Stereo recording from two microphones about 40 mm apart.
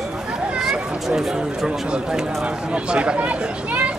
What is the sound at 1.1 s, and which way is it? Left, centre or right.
Speech, centre.